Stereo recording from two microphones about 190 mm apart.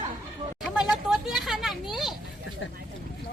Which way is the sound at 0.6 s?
Centre (ahead or behind).